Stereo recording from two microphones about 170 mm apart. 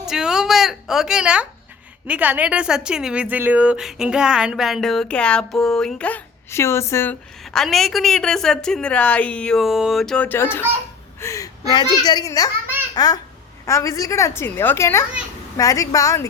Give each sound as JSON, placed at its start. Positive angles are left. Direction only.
{"t": 0.1, "sound": "a woman's voice", "side_deg": -5}
{"t": 7.4, "sound": "a woman's voice", "side_deg": 0}
{"t": 11.2, "sound": "a sound", "side_deg": 20}
{"t": 12.0, "sound": "a woman's voice", "side_deg": 20}